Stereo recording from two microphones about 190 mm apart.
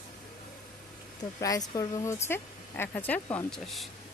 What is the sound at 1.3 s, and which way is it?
Speech, 20° left (ahead or behind).